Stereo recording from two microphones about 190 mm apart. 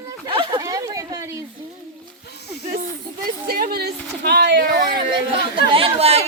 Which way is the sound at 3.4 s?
50° right (ahead or behind).